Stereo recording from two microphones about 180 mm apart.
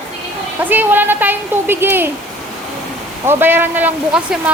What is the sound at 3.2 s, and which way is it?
A woman's voice, 10° right (ahead or behind).